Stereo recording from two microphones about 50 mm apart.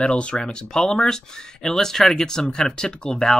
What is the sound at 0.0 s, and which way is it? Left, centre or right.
Speech, left.